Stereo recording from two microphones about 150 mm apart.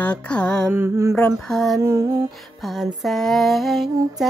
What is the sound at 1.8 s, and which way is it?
Music, 20° right (ahead or behind).